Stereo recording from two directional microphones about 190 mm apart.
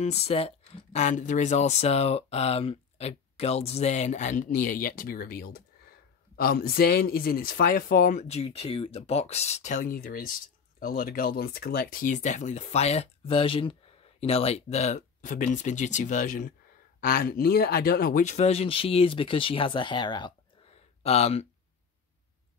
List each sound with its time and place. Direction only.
0.0 s speech: 35° left (ahead or behind); by 18.2 s 50° left (ahead or behind)
18.2 s speech: 35° left (ahead or behind)